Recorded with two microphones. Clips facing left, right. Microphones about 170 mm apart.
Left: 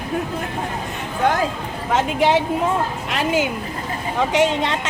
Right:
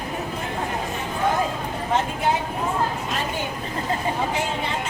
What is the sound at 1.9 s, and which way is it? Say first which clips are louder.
A woman's voice: left 6 dB; 85° left.